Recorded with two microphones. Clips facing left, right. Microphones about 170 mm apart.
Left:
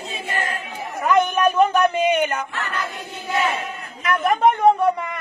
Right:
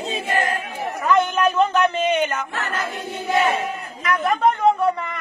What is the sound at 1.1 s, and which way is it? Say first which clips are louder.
Speech: left 1 dB; 15° left (ahead or behind).